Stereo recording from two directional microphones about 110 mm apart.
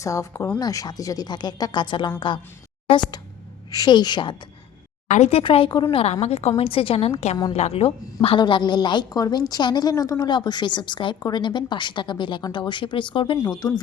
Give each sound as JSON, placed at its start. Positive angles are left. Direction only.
{"t": 0.0, "sound": "a woman's voice", "side_deg": 30}
{"t": 3.7, "sound": "a woman's voice", "side_deg": 40}
{"t": 5.1, "sound": "speech", "side_deg": 85}
{"t": 5.4, "sound": "a woman's voice", "side_deg": 50}
{"t": 5.9, "sound": "a woman's voice", "side_deg": 65}
{"t": 6.6, "sound": "a woman's voice", "side_deg": 55}
{"t": 13.6, "sound": "speech", "side_deg": 40}